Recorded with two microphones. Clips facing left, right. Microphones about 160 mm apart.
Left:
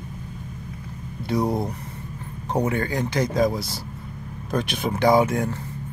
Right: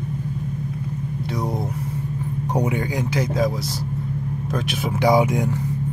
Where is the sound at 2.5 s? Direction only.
15° right (ahead or behind).